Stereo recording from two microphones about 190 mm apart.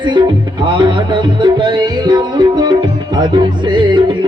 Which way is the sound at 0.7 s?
25° right (ahead or behind).